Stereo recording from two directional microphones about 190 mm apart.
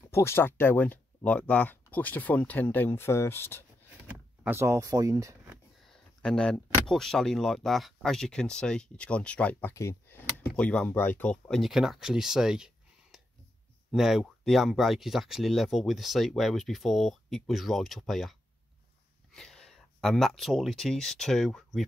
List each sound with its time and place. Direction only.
0.1 s speech: 15° left (ahead or behind)
4.4 s speech: 10° right (ahead or behind)
5.9 s speech: 5° left (ahead or behind)
19.3 s speech: centre (ahead or behind)